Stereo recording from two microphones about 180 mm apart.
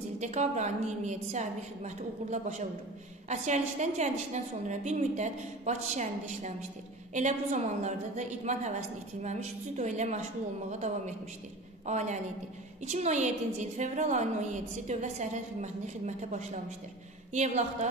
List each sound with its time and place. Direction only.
0.2 s a woman's voice: 40° right (ahead or behind)